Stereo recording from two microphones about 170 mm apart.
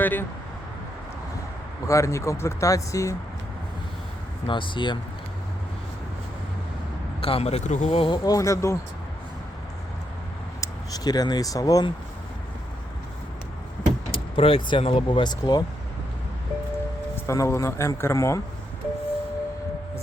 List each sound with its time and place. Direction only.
0.0 s speech: 10° left (ahead or behind)
1.9 s speech: 15° left (ahead or behind)
4.4 s speech: 30° left (ahead or behind)
7.2 s speech: 35° left (ahead or behind); by 8.8 s 15° left (ahead or behind)
10.6 s speech: 25° left (ahead or behind)
14.1 s speech: 30° left (ahead or behind)
17.2 s speech: 15° left (ahead or behind)